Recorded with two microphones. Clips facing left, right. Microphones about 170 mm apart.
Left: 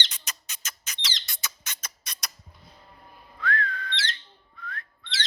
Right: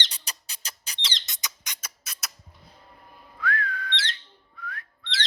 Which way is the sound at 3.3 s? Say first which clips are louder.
Even; 10° right (ahead or behind).